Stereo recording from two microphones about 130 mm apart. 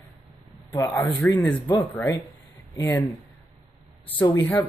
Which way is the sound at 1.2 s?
15° left (ahead or behind).